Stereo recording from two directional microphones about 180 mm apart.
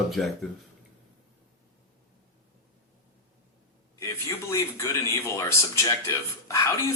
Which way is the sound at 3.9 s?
15° left (ahead or behind).